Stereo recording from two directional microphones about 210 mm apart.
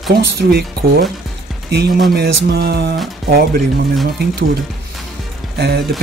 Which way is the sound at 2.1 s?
50° right (ahead or behind).